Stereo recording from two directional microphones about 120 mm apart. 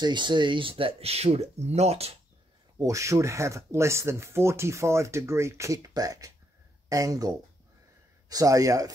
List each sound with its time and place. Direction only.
0.0 s speech: 40° right (ahead or behind); by 2.1 s 60° right (ahead or behind)
2.8 s speech: 25° right (ahead or behind)